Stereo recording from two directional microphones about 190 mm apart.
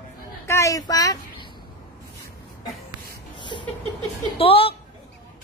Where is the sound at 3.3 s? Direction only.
25° left (ahead or behind).